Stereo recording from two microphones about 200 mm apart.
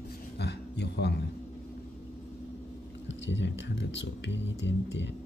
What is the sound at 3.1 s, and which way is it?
Speech, 65° left (ahead or behind).